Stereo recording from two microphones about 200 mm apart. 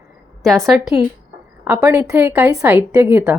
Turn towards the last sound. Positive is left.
turn(degrees=-10)  # may be behind; listen again after turning